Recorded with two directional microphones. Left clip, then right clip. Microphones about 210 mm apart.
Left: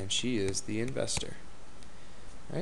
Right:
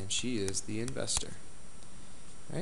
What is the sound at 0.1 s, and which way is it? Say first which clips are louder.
Speech: left 3 dB; 15° left (ahead or behind).